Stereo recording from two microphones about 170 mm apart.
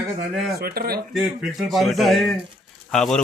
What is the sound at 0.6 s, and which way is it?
Speech, 65° right (ahead or behind).